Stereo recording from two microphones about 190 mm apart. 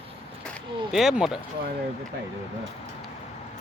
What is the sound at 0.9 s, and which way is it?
Speech, centre (ahead or behind).